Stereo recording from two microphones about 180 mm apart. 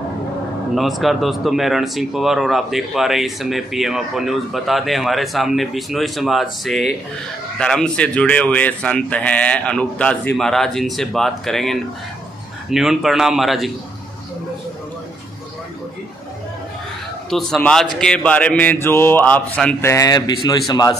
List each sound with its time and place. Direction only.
0.7 s speech: centre (ahead or behind)
17.3 s a man's voice: centre (ahead or behind); by 20.9 s 20° left (ahead or behind)